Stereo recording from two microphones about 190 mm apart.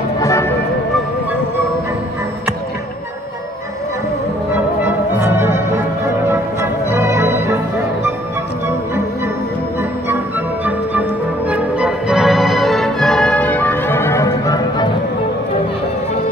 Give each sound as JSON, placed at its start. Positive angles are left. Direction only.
{"t": 0.2, "sound": "music", "side_deg": 15}
{"t": 4.6, "sound": "music", "side_deg": -10}
{"t": 10.0, "sound": "music", "side_deg": -10}